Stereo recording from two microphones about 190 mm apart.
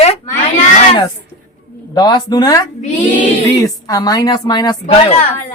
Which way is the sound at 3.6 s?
20° left (ahead or behind).